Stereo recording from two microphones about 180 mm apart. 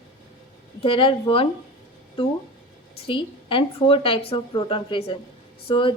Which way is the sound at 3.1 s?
30° left (ahead or behind).